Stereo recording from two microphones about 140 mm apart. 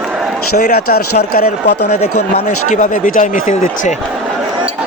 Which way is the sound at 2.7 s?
65° left (ahead or behind).